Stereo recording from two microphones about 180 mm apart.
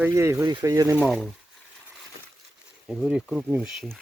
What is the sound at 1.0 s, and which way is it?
Speech, centre (ahead or behind).